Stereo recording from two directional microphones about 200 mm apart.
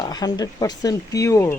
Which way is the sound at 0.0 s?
20° left (ahead or behind).